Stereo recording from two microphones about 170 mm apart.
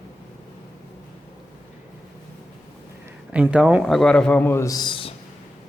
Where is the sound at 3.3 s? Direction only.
5° right (ahead or behind); by 5.1 s 30° left (ahead or behind).